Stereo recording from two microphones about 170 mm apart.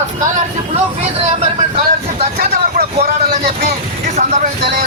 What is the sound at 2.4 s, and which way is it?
Speech, 65° right (ahead or behind).